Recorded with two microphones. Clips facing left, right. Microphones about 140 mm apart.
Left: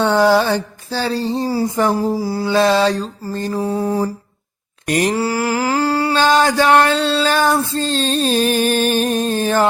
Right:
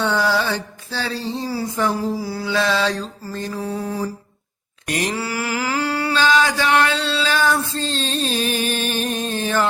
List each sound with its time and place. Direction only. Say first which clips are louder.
0.0 s music: left 7 dB; 50° left (ahead or behind)
3.3 s mantra: left 6 dB; 40° left (ahead or behind)
6.4 s music: left 5 dB; 45° left (ahead or behind)